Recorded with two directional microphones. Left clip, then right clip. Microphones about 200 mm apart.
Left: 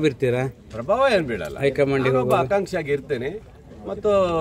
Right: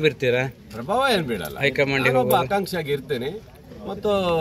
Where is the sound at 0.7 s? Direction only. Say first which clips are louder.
Left 2 dB; centre (ahead or behind).